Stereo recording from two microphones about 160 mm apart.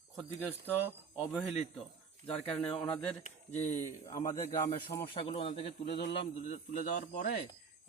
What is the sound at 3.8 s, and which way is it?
Speech, 20° left (ahead or behind).